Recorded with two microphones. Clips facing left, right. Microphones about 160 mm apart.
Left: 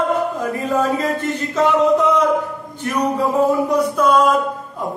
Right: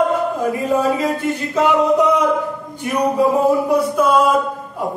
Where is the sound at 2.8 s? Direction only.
10° right (ahead or behind).